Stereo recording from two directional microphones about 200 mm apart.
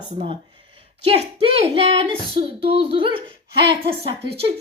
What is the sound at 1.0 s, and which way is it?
Speech, 30° right (ahead or behind).